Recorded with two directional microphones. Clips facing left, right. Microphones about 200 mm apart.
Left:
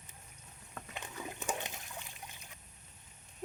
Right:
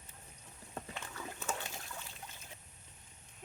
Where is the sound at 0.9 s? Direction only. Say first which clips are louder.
Left 2 dB; 15° left (ahead or behind).